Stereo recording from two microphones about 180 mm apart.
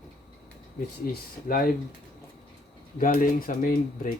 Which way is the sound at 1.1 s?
55° left (ahead or behind).